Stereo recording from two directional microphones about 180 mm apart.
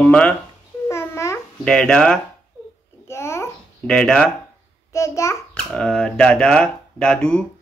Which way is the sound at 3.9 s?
5° left (ahead or behind).